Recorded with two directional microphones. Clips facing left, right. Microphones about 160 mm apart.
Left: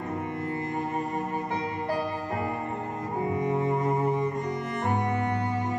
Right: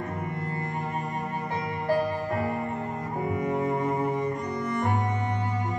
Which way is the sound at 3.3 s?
25° left (ahead or behind).